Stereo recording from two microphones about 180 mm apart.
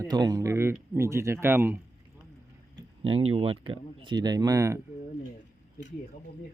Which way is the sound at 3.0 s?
30° right (ahead or behind).